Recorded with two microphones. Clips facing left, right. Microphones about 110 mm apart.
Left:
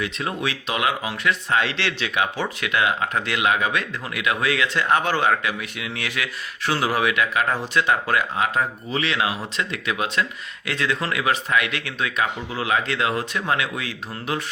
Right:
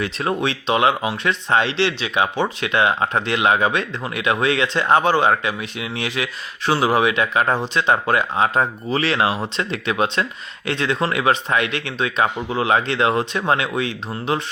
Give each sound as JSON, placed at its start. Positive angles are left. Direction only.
{"t": 0.0, "sound": "speech", "side_deg": -30}